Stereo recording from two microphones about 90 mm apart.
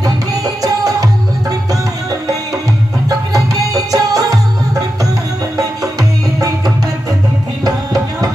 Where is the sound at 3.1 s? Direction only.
40° right (ahead or behind).